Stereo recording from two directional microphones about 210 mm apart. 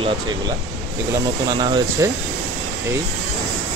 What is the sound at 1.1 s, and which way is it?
Speech, 20° right (ahead or behind).